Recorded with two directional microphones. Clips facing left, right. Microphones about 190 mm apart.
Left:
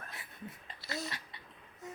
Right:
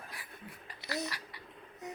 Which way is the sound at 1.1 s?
25° left (ahead or behind).